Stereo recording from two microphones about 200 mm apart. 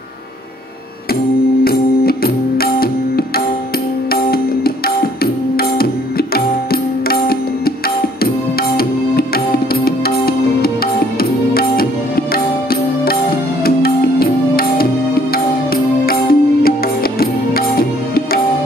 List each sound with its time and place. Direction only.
1.6 s music: 50° left (ahead or behind)